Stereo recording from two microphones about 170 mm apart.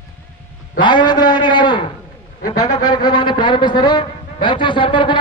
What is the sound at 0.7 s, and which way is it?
A man's voice, 25° left (ahead or behind).